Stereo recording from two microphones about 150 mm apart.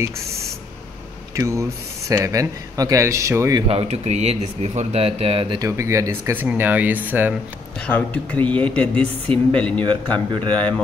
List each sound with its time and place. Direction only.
1.3 s speech: 20° right (ahead or behind)
3.6 s a man's voice: 45° right (ahead or behind)
5.7 s speech: 20° right (ahead or behind)
7.8 s speech: 10° left (ahead or behind)